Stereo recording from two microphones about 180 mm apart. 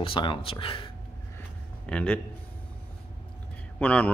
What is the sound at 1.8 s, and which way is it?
Speech, 10° left (ahead or behind).